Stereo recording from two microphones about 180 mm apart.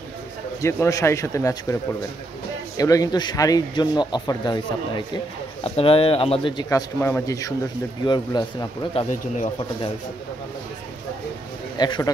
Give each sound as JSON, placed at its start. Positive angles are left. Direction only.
{"t": 0.6, "sound": "speech", "side_deg": 15}
{"t": 2.8, "sound": "speech", "side_deg": 20}
{"t": 6.7, "sound": "speech", "side_deg": 15}
{"t": 11.8, "sound": "speech", "side_deg": 20}